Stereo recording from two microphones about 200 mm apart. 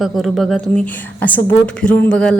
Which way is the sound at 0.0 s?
Centre (ahead or behind).